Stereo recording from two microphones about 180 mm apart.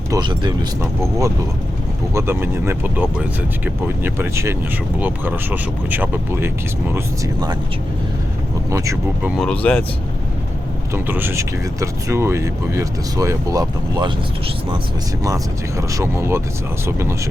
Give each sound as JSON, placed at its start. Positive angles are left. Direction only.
{"t": 0.1, "sound": "speech", "side_deg": -25}
{"t": 2.1, "sound": "speech", "side_deg": -15}
{"t": 8.7, "sound": "speech", "side_deg": -15}
{"t": 9.4, "sound": "speech", "side_deg": 5}
{"t": 10.9, "sound": "speech", "side_deg": -10}
{"t": 15.8, "sound": "speech", "side_deg": -15}